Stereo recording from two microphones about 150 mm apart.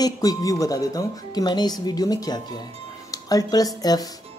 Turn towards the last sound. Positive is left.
turn(degrees=25)  # may be behind; listen again after turning